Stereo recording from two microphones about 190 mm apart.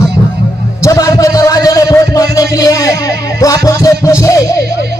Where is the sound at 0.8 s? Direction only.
15° left (ahead or behind).